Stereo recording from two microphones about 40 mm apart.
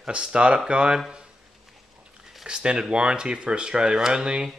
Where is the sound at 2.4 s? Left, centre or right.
Right.